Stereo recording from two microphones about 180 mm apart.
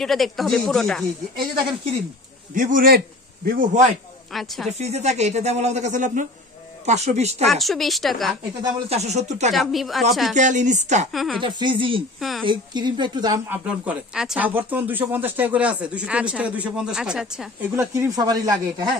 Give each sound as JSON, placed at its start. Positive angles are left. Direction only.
{"t": 0.0, "sound": "speech", "side_deg": 0}
{"t": 2.5, "sound": "speech", "side_deg": -50}
{"t": 4.3, "sound": "speech", "side_deg": 0}
{"t": 4.6, "sound": "a woman's voice", "side_deg": -35}
{"t": 7.4, "sound": "speech", "side_deg": 0}
{"t": 8.8, "sound": "a woman's voice", "side_deg": -40}
{"t": 9.5, "sound": "speech", "side_deg": 0}
{"t": 10.3, "sound": "speech", "side_deg": -45}
{"t": 11.1, "sound": "speech", "side_deg": 0}
{"t": 11.4, "sound": "a woman's voice", "side_deg": -25}
{"t": 12.2, "sound": "speech", "side_deg": 0}
{"t": 12.4, "sound": "a woman's voice", "side_deg": -25}
{"t": 13.5, "sound": "speech", "side_deg": -5}